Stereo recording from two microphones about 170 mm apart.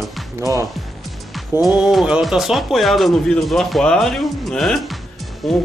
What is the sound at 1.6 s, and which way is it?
Music, 5° right (ahead or behind).